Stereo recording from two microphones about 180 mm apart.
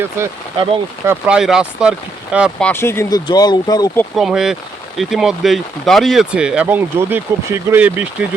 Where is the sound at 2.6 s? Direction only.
10° left (ahead or behind).